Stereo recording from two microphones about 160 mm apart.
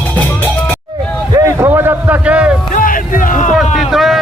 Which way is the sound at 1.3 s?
20° right (ahead or behind).